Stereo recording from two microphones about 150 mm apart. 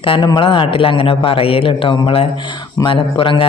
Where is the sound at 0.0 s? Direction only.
30° left (ahead or behind).